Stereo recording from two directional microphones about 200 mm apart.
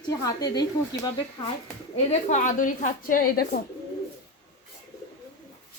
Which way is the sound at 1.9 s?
35° left (ahead or behind).